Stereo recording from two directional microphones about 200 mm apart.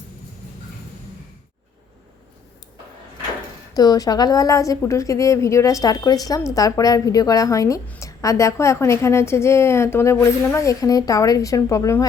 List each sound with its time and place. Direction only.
3.8 s a woman's voice: 20° left (ahead or behind)